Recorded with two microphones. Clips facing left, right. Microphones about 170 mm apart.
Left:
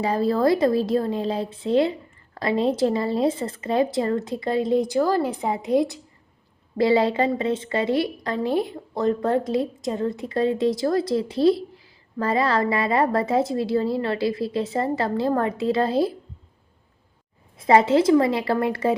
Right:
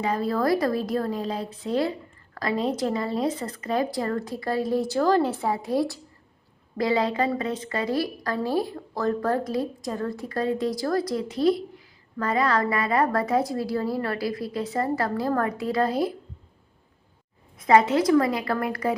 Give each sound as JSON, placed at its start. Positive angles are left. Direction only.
{"t": 0.0, "sound": "a woman's voice", "side_deg": 30}
{"t": 17.6, "sound": "a woman's voice", "side_deg": 25}